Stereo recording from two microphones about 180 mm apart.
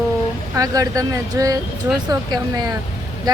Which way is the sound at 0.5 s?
20° right (ahead or behind).